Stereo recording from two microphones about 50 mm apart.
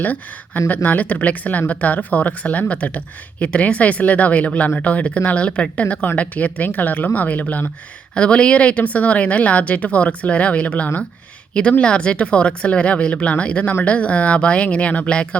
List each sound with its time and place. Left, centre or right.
0.0 s speech: left
8.1 s speech: left